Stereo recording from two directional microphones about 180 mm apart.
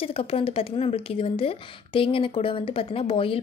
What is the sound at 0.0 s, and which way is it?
A woman's voice, 30° left (ahead or behind).